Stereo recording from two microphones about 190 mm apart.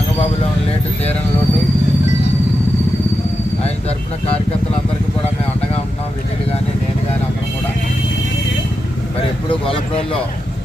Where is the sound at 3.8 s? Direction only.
30° left (ahead or behind).